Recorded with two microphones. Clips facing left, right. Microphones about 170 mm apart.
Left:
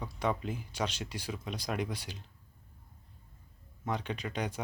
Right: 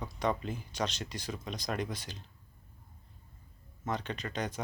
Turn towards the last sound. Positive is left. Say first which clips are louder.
# left 1 dB
turn(degrees=10)  # may be behind; listen again after turning